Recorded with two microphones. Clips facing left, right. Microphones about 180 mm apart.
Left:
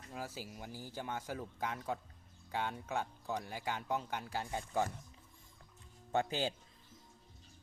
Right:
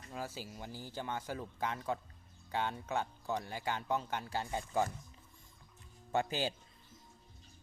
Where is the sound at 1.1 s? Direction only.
5° left (ahead or behind).